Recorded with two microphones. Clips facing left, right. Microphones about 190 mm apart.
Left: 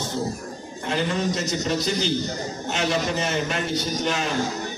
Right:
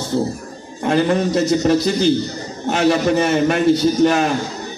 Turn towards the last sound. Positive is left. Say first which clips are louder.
# right 11 dB
turn(degrees=-60)  # may be behind; listen again after turning